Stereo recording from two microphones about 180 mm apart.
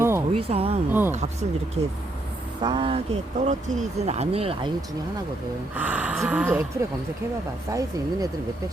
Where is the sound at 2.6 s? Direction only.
25° right (ahead or behind).